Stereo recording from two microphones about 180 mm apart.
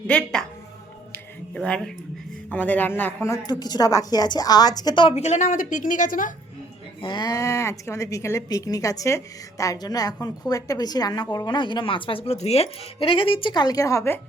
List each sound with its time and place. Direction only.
0.1 s a woman's voice: 5° left (ahead or behind)
1.1 s music: 5° left (ahead or behind)
2.5 s a woman's voice: 10° left (ahead or behind); by 6.3 s 45° left (ahead or behind)
7.0 s a woman's voice: 25° left (ahead or behind)